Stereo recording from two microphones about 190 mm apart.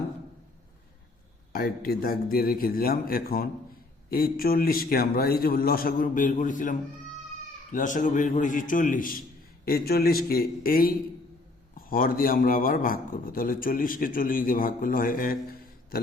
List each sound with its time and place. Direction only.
1.5 s speech: 50° left (ahead or behind)